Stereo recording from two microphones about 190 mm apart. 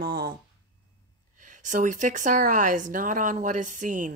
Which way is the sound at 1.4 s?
40° right (ahead or behind).